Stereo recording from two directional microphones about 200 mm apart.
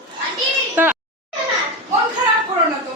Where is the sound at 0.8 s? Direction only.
10° right (ahead or behind).